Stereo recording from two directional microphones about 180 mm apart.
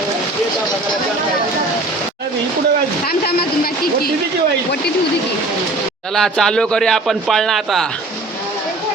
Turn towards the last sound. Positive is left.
turn(degrees=0)  # may be behind; listen again after turning